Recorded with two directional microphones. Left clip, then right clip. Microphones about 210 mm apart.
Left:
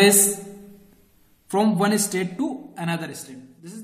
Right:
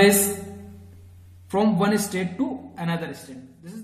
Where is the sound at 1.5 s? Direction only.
45° left (ahead or behind).